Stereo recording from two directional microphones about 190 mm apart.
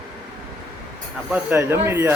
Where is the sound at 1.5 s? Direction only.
15° right (ahead or behind).